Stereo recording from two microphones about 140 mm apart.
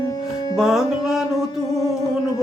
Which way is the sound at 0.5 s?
5° right (ahead or behind).